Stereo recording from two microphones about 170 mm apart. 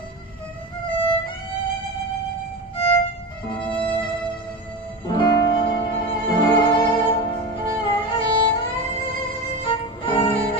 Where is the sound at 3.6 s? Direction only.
30° left (ahead or behind).